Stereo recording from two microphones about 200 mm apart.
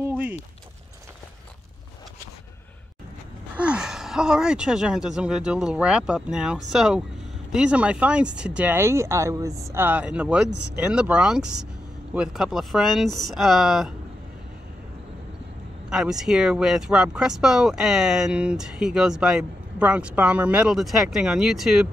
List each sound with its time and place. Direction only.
0.1 s a sound: 5° right (ahead or behind)
3.5 s speech: 5° right (ahead or behind)
15.9 s speech: centre (ahead or behind)